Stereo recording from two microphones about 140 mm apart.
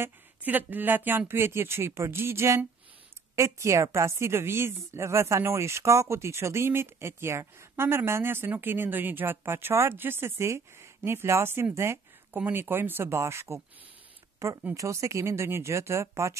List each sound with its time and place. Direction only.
0.0 s a woman's voice: 10° right (ahead or behind)